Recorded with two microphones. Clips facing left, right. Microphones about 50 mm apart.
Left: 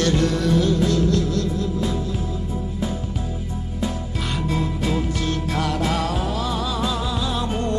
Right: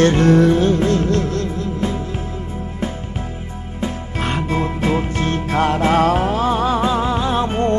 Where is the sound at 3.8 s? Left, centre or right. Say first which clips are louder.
Right 4 dB; right.